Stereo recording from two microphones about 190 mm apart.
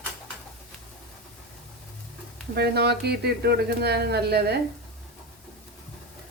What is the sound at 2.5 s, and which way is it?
Speech, 60° right (ahead or behind).